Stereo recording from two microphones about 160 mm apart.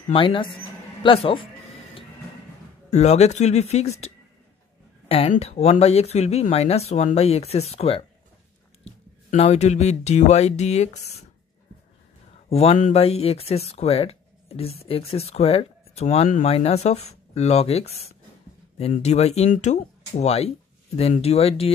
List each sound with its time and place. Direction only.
0.1 s speech: 30° left (ahead or behind)
2.9 s speech: 45° left (ahead or behind)
5.0 s a sound: 35° left (ahead or behind)
5.3 s speech: 40° left (ahead or behind)
12.4 s speech: 40° left (ahead or behind)